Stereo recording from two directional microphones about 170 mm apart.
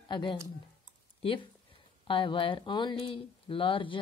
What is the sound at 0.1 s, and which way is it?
A woman's voice, 30° left (ahead or behind).